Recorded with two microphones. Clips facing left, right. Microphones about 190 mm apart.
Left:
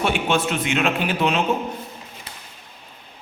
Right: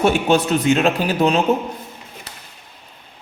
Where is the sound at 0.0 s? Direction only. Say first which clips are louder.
Right 5 dB; 40° right (ahead or behind).